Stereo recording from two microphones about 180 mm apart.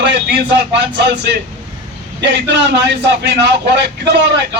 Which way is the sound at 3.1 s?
70° right (ahead or behind).